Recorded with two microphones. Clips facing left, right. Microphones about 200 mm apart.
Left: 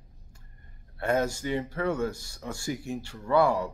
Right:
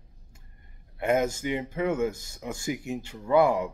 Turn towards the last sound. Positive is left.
turn(degrees=-20)  # may be behind; listen again after turning